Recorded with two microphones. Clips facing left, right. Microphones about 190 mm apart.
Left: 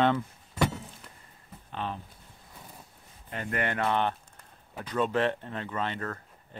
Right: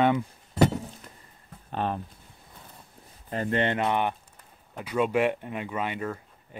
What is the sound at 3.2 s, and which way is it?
Speech, 35° right (ahead or behind).